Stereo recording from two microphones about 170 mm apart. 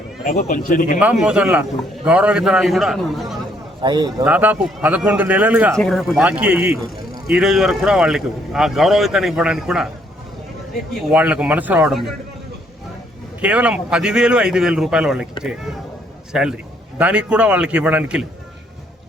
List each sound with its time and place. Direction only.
0.3 s speech: 55° left (ahead or behind)
0.9 s a man's voice: 5° right (ahead or behind)
3.8 s a man's voice: 25° right (ahead or behind)
4.2 s a man's voice: 10° right (ahead or behind)
5.7 s a man's voice: centre (ahead or behind)
11.1 s a man's voice: 10° right (ahead or behind)
13.4 s a man's voice: 5° right (ahead or behind)
16.3 s a man's voice: 5° right (ahead or behind)